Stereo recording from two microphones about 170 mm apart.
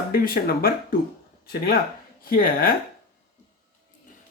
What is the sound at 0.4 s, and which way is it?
Speech, 60° left (ahead or behind).